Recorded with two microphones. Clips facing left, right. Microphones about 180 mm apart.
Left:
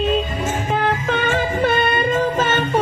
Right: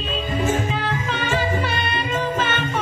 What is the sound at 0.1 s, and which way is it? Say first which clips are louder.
Music: left 2 dB; 55° left (ahead or behind).